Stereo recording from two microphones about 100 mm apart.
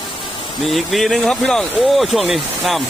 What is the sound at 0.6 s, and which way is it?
Speech, centre (ahead or behind).